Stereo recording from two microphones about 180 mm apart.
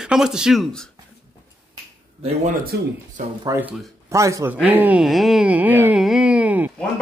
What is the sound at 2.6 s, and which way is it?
Speech, 55° right (ahead or behind).